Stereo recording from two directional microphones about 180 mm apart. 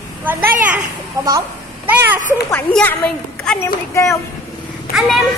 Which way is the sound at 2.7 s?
10° left (ahead or behind).